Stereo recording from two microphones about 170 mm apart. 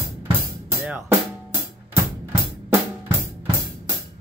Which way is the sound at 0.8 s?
10° right (ahead or behind).